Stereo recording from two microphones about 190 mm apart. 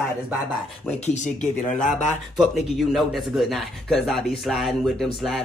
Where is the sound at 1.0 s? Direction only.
40° left (ahead or behind).